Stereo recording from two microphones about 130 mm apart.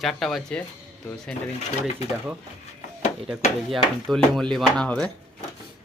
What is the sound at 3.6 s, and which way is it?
Speech, centre (ahead or behind).